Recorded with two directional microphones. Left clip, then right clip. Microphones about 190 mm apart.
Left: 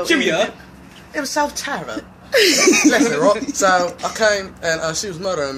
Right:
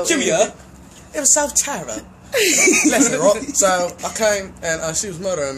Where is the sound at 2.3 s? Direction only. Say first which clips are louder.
Left 2 dB; 50° left (ahead or behind).